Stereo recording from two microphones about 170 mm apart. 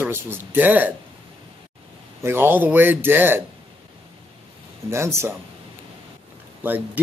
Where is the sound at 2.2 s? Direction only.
15° right (ahead or behind).